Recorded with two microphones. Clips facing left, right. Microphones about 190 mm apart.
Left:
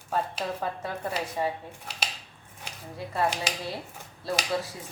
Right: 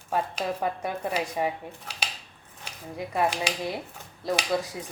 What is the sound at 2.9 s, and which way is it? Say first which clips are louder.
Speech: right 2 dB; 15° right (ahead or behind).